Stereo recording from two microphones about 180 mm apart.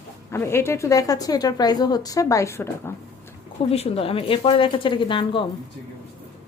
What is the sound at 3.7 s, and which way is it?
A woman's voice, 30° left (ahead or behind).